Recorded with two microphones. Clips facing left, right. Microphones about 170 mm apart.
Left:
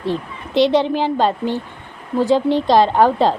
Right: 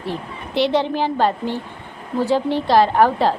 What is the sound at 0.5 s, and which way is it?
A woman's voice, 15° left (ahead or behind).